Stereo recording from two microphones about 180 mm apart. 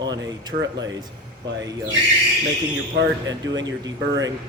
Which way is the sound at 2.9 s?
90° right.